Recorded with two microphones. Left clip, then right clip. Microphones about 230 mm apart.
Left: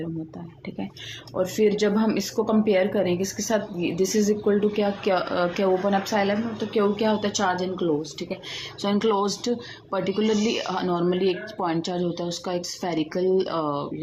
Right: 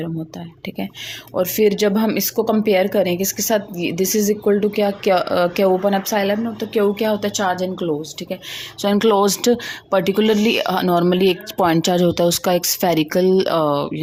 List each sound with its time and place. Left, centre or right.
1.4 s speech: right